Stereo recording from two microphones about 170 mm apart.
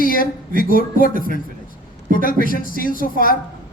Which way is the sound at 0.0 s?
55° left (ahead or behind).